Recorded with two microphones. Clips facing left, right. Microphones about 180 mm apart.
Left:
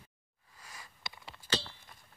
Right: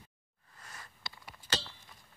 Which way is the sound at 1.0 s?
20° left (ahead or behind).